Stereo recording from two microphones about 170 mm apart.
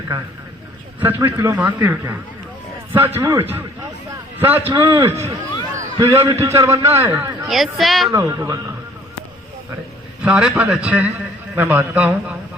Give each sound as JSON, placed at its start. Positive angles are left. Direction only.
{"t": 1.0, "sound": "a man's voice", "side_deg": -15}
{"t": 3.2, "sound": "a man's voice", "side_deg": -15}
{"t": 7.4, "sound": "speech", "side_deg": 0}
{"t": 8.1, "sound": "a man's voice", "side_deg": -20}
{"t": 10.2, "sound": "a man's voice", "side_deg": -5}